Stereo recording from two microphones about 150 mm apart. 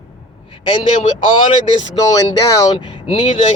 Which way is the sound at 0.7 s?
35° left (ahead or behind).